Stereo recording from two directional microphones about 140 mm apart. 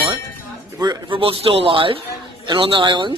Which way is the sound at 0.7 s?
35° right (ahead or behind).